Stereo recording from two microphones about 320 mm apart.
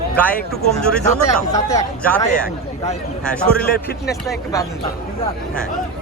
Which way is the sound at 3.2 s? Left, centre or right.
Centre.